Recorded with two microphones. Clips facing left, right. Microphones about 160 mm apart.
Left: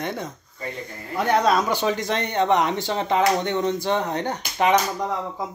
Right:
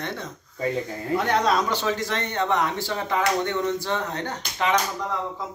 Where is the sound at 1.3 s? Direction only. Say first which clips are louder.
Left 4 dB; 10° left (ahead or behind).